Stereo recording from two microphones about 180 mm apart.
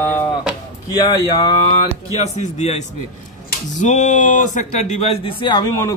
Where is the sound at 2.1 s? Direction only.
40° left (ahead or behind).